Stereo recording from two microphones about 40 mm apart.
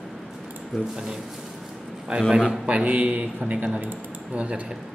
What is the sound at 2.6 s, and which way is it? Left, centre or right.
Speech, right.